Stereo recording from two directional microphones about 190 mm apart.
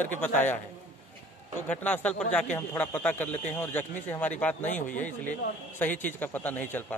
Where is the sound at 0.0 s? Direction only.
10° left (ahead or behind).